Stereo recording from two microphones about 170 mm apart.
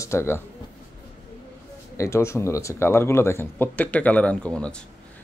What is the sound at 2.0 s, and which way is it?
A man's voice, 15° left (ahead or behind).